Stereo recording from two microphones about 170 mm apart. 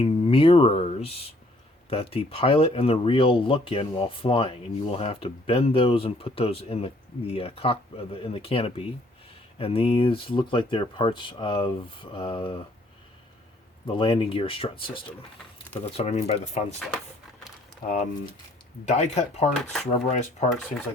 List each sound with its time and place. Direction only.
0.0 s speech: 35° left (ahead or behind)
13.8 s speech: 30° left (ahead or behind)
17.8 s speech: 45° left (ahead or behind)